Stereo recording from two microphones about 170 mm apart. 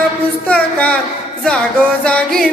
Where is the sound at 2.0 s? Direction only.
5° left (ahead or behind).